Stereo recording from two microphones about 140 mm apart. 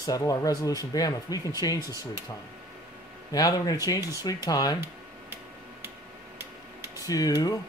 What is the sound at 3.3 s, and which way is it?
Speech, 25° left (ahead or behind).